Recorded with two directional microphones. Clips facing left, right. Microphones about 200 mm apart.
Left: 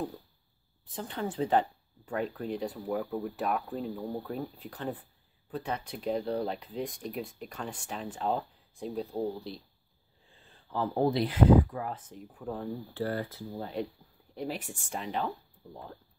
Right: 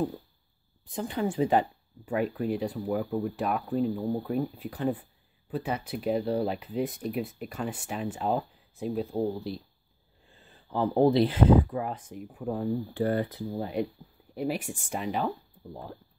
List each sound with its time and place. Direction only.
0.8 s speech: 10° right (ahead or behind)
10.7 s speech: 20° right (ahead or behind)